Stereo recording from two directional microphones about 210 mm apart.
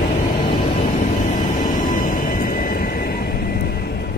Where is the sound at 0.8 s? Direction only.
30° left (ahead or behind).